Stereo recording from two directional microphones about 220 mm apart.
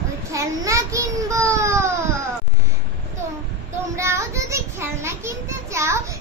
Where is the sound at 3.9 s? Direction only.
15° right (ahead or behind).